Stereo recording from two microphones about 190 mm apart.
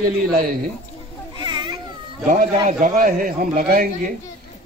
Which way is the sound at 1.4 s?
20° right (ahead or behind).